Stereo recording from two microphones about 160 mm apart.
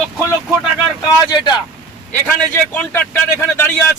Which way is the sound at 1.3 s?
30° left (ahead or behind).